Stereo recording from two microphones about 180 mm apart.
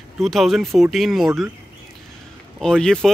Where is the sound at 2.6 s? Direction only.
5° left (ahead or behind).